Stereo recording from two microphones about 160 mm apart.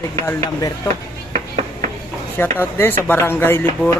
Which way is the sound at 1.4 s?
45° right (ahead or behind).